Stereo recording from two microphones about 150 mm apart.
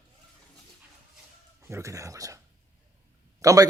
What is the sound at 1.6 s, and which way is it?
Speech, 20° right (ahead or behind).